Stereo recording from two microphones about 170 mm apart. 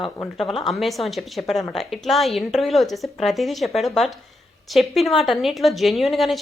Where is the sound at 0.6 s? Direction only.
Centre (ahead or behind).